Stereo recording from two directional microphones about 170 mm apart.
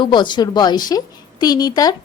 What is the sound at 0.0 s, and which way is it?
A woman's voice, 25° left (ahead or behind).